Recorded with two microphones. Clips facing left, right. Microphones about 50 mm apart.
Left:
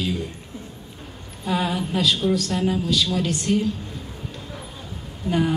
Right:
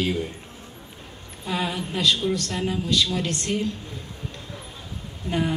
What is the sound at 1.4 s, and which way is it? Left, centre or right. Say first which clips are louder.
A woman's voice: left 4 dB; centre.